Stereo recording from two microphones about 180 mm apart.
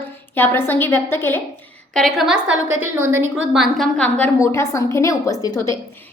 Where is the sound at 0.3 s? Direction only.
10° left (ahead or behind).